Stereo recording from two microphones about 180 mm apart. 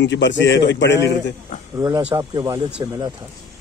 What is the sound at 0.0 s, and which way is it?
A man's voice, 85° left.